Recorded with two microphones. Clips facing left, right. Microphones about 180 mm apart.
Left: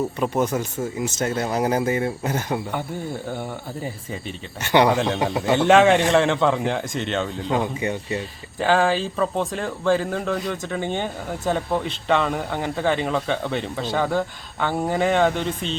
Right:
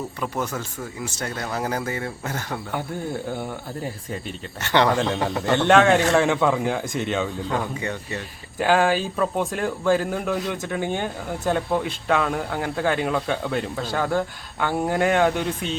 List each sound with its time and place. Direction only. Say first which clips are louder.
0.2 s speech: left 4 dB; 20° left (ahead or behind)
3.3 s speech: even; centre (ahead or behind)
4.6 s speech: left 2 dB; 15° left (ahead or behind); by 7.3 s 5° right (ahead or behind)
7.4 s speech: left 3 dB; 20° left (ahead or behind)
8.5 s speech: even; 5° right (ahead or behind)